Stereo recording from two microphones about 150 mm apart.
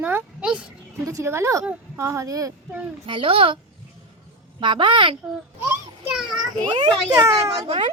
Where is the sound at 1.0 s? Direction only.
20° right (ahead or behind).